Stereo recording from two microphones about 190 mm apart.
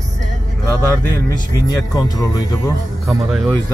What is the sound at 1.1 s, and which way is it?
Speech, 20° left (ahead or behind).